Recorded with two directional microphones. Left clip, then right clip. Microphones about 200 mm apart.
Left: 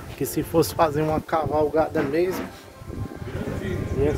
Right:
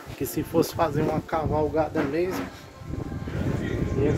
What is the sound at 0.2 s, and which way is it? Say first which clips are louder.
Speech: left 3 dB; 20° left (ahead or behind).